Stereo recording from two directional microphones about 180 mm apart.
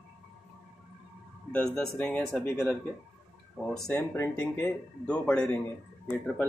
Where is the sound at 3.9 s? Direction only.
10° left (ahead or behind).